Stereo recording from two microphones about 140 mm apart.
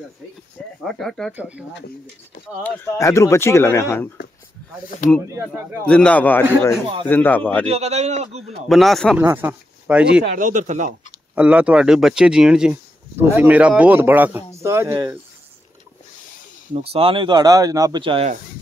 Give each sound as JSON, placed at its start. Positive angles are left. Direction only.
{"t": 0.8, "sound": "speech", "side_deg": 5}
{"t": 1.3, "sound": "speech", "side_deg": -10}
{"t": 2.6, "sound": "speech", "side_deg": 20}
{"t": 5.2, "sound": "speech", "side_deg": -15}
{"t": 5.9, "sound": "a man's voice", "side_deg": 10}
{"t": 7.6, "sound": "a man's voice", "side_deg": -50}
{"t": 8.6, "sound": "speech", "side_deg": 0}
{"t": 9.2, "sound": "speech", "side_deg": -15}
{"t": 10.3, "sound": "speech", "side_deg": -65}
{"t": 11.3, "sound": "speech", "side_deg": -10}
{"t": 16.7, "sound": "speech", "side_deg": -45}
{"t": 18.0, "sound": "speech", "side_deg": -40}